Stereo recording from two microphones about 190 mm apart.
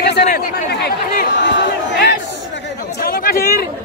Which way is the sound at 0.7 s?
60° left (ahead or behind).